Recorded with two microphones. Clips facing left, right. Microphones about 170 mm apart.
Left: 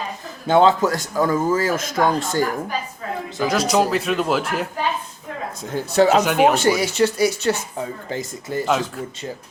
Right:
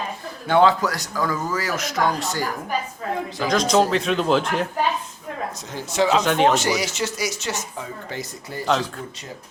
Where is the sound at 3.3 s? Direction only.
5° left (ahead or behind).